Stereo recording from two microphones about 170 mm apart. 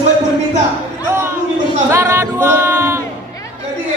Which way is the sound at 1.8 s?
15° right (ahead or behind).